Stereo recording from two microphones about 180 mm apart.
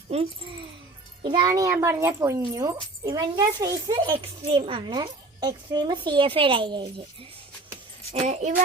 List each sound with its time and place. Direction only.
0.1 s speech: 30° right (ahead or behind)
8.2 s speech: 40° right (ahead or behind)